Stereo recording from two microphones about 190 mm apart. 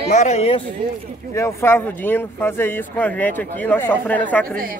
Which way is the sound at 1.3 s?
15° left (ahead or behind).